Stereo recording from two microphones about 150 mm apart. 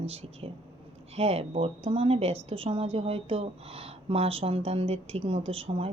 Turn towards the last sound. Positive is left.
turn(degrees=-40)  # may be behind; listen again after turning